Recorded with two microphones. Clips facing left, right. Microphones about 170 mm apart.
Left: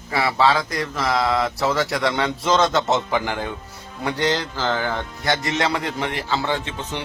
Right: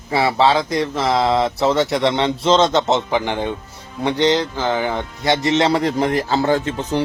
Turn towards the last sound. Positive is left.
turn(degrees=-35)  # may be behind; listen again after turning